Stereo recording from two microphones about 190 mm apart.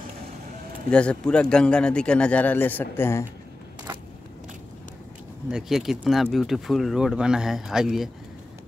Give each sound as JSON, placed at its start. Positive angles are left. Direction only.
{"t": 0.8, "sound": "speech", "side_deg": 5}
{"t": 5.5, "sound": "speech", "side_deg": 0}